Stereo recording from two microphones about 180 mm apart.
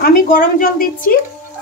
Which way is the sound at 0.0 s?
50° left (ahead or behind).